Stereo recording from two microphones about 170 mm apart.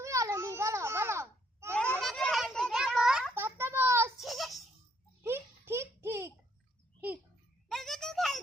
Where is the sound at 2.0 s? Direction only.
5° left (ahead or behind); by 4.1 s 15° right (ahead or behind).